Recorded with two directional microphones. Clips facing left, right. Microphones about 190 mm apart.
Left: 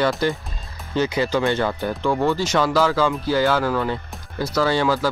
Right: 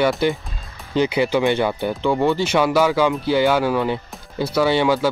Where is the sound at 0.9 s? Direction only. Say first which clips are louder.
Right 3 dB; 15° right (ahead or behind).